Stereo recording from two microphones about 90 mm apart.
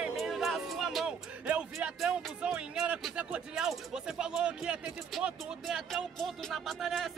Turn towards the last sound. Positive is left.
turn(degrees=0)  # may be behind; listen again after turning